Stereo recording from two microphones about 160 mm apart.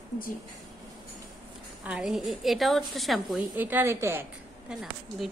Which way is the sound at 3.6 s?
10° right (ahead or behind).